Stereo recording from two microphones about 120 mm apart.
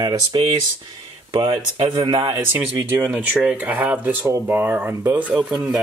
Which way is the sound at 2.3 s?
20° right (ahead or behind).